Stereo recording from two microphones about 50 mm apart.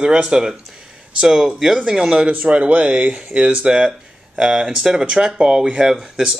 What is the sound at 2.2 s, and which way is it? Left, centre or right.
Speech, right.